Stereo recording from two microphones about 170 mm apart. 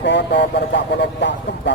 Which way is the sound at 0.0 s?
90° left.